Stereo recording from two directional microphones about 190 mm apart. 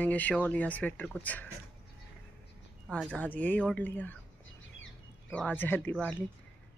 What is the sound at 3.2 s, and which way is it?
Speech, 10° left (ahead or behind).